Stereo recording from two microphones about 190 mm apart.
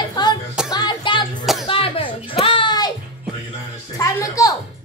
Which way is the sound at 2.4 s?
25° left (ahead or behind).